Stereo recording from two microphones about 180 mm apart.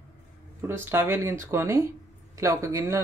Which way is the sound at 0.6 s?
15° right (ahead or behind).